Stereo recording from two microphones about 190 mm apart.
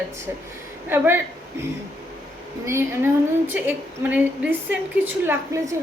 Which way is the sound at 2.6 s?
15° right (ahead or behind).